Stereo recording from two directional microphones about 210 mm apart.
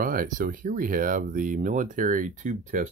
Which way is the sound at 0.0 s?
40° right (ahead or behind).